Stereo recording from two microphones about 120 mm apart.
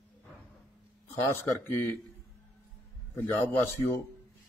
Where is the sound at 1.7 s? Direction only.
20° left (ahead or behind).